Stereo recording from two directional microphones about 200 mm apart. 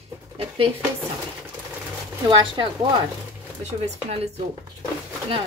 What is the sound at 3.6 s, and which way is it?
Speech, 30° right (ahead or behind).